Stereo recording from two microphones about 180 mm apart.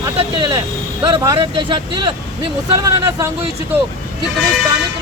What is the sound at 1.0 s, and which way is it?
Speech, 20° right (ahead or behind).